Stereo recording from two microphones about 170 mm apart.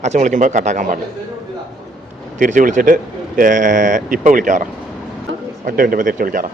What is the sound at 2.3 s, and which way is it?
Speech, 50° right (ahead or behind).